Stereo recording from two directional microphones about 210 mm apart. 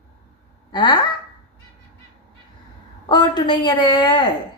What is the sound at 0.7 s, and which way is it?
Speech, 20° left (ahead or behind).